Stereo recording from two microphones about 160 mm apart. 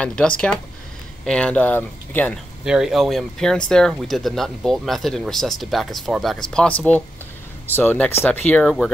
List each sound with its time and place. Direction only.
0.0 s speech: 5° left (ahead or behind)
2.6 s speech: 5° right (ahead or behind)
7.7 s speech: 10° left (ahead or behind)